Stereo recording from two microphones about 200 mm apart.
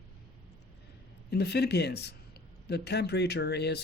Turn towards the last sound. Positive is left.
turn(degrees=55)  # may be behind; listen again after turning